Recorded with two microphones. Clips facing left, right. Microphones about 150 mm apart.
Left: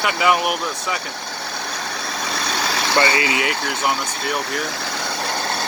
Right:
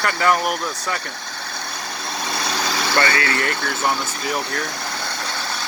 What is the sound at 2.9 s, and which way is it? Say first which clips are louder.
Speech: left 2 dB; 15° left (ahead or behind).